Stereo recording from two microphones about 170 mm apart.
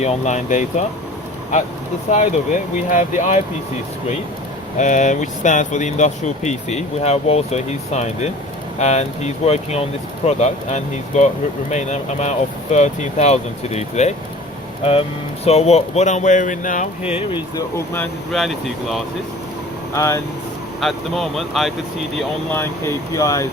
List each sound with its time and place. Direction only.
0.0 s speech: 40° left (ahead or behind)
4.8 s speech: 45° left (ahead or behind)
15.4 s speech: 40° left (ahead or behind)
17.2 s speech: 30° left (ahead or behind)
17.7 s speech: 15° left (ahead or behind)
18.3 s speech: centre (ahead or behind)
19.9 s speech: 15° left (ahead or behind)
20.8 s speech: centre (ahead or behind)
22.5 s speech: 15° left (ahead or behind)